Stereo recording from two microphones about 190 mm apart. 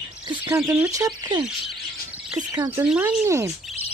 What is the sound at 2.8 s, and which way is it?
Speech, 5° right (ahead or behind).